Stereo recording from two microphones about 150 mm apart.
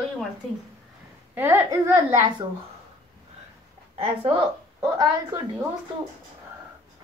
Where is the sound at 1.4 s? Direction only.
15° right (ahead or behind).